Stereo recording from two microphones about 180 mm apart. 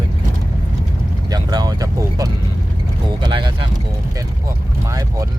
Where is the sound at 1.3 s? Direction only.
20° right (ahead or behind).